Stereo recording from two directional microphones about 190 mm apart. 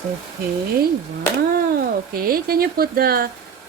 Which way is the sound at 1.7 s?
50° right (ahead or behind).